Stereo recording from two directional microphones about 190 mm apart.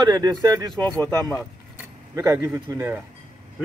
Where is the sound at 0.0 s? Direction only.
20° right (ahead or behind).